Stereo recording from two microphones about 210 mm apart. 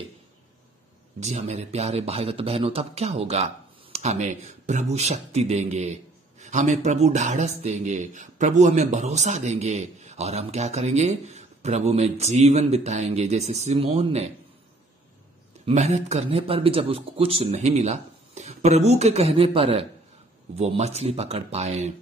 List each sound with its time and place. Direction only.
1.2 s speech: 30° right (ahead or behind)
15.6 s speech: 30° right (ahead or behind)